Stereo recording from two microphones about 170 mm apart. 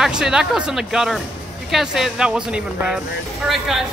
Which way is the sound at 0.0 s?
5° right (ahead or behind).